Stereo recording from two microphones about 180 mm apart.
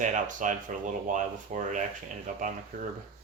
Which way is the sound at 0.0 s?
45° right (ahead or behind).